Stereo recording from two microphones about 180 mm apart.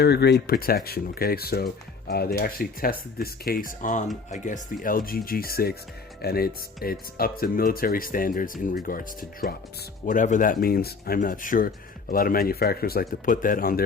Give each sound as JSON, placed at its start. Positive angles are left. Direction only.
{"t": 0.0, "sound": "speech", "side_deg": 65}